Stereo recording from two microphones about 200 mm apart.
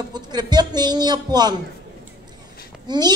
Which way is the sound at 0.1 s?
20° right (ahead or behind).